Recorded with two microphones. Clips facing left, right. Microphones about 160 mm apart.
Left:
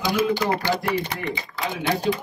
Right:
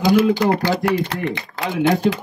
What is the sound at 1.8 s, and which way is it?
Speech, 45° right (ahead or behind).